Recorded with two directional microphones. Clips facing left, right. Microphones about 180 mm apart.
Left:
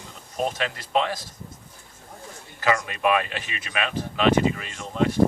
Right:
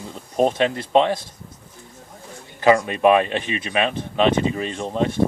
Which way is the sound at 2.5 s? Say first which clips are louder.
Right 8 dB; 25° right (ahead or behind).